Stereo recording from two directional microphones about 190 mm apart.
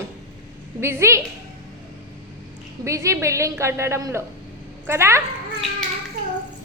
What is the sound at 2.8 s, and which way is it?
A woman's voice, 15° right (ahead or behind).